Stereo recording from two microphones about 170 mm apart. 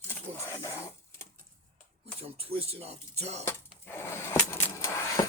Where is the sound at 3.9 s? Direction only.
15° left (ahead or behind).